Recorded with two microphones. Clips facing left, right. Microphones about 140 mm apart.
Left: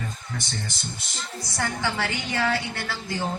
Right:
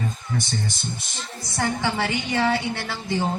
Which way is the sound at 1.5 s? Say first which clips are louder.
Right 4 dB; 20° right (ahead or behind).